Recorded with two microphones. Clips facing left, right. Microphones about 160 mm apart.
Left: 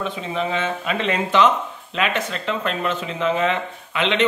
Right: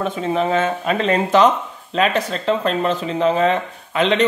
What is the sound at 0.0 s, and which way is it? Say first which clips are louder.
Speech: right 5 dB; 45° right (ahead or behind).